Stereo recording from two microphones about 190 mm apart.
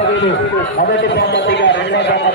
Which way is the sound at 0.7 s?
55° left (ahead or behind).